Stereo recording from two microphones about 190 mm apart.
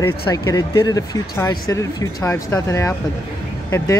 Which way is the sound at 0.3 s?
20° left (ahead or behind).